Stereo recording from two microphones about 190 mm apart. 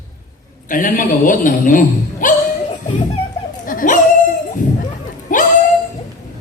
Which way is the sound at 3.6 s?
45° left (ahead or behind).